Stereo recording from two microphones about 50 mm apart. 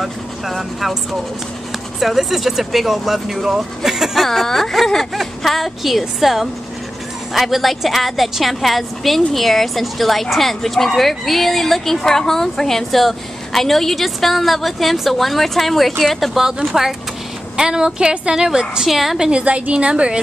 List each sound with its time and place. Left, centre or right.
0.0 s speech: centre
2.0 s a woman's voice: centre
18.9 s a woman's voice: centre
19.4 s a woman's voice: right